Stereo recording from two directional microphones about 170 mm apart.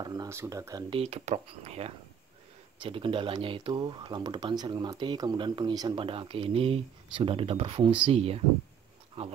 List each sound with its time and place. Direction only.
0.0 s speech: 20° right (ahead or behind)
0.8 s speech: 35° right (ahead or behind)